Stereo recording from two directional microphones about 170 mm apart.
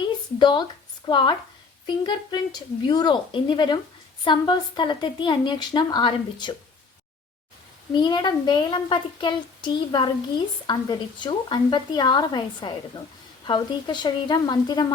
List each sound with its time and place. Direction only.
0.3 s a child's voice: 25° left (ahead or behind)
7.9 s a child's voice: 25° left (ahead or behind)